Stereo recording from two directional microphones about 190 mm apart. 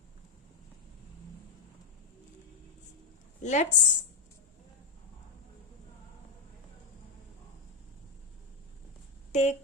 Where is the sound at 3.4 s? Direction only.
40° left (ahead or behind).